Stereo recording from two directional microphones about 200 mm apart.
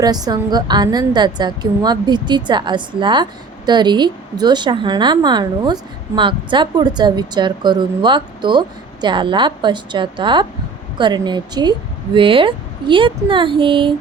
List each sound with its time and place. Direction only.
0.0 s a woman's voice: 20° right (ahead or behind)